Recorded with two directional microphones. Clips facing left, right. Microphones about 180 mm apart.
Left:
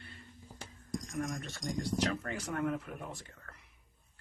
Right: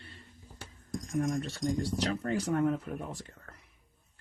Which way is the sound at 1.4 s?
30° right (ahead or behind).